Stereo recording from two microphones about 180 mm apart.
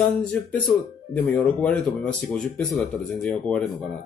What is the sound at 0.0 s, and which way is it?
Speech, 5° left (ahead or behind).